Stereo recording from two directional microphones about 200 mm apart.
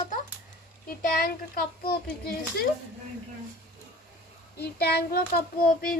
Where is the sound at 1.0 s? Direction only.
45° left (ahead or behind).